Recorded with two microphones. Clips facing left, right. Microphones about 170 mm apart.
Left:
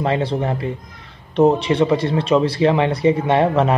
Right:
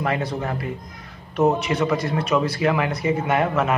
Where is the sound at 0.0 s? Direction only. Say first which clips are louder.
Left 5 dB; 30° left (ahead or behind).